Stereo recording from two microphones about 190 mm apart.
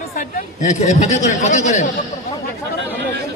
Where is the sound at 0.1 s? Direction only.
45° left (ahead or behind).